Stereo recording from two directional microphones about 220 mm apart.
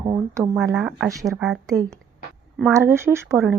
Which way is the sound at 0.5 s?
5° right (ahead or behind).